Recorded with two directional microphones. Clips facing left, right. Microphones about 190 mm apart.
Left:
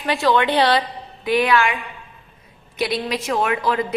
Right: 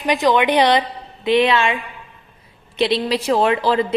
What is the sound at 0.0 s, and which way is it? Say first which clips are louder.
A woman's voice: right 2 dB; 15° right (ahead or behind).